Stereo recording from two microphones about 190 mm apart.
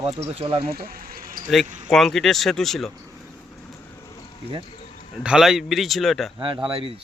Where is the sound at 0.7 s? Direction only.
50° right (ahead or behind).